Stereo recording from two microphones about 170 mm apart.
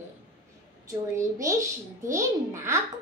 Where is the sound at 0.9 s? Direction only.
20° right (ahead or behind).